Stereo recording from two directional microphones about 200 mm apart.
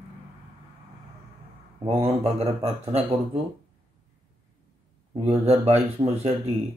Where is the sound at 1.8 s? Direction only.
30° right (ahead or behind).